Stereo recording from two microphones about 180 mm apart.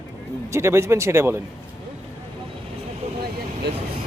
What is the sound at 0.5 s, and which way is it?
Speech, 15° right (ahead or behind).